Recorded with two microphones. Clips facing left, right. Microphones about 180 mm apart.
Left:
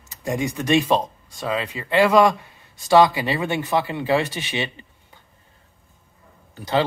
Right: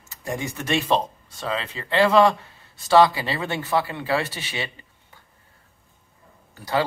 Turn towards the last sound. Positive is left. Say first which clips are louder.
# left 2 dB
turn(degrees=20)  # may be behind; listen again after turning